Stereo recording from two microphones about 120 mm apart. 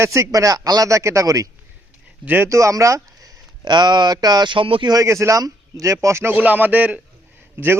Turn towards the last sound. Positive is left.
turn(degrees=-15)  # may be behind; listen again after turning